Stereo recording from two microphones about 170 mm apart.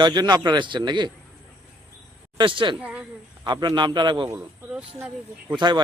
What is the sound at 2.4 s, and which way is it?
Speech, 30° right (ahead or behind).